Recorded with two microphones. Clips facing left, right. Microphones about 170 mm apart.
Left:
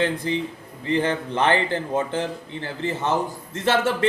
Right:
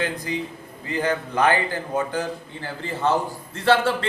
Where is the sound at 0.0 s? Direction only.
25° left (ahead or behind).